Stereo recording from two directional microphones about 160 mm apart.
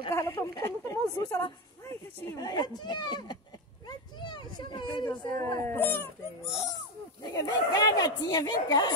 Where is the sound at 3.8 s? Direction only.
30° left (ahead or behind).